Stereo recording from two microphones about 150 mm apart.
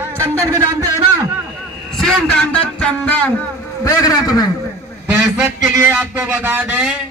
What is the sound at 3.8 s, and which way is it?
Speech, 25° left (ahead or behind).